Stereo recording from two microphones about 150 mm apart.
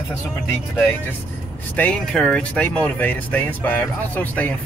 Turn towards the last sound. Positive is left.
turn(degrees=10)  # may be behind; listen again after turning